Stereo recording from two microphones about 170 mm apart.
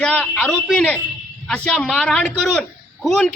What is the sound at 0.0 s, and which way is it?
A man's voice, 5° left (ahead or behind).